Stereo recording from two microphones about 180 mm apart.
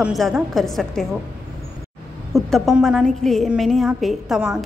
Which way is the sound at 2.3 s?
Centre (ahead or behind).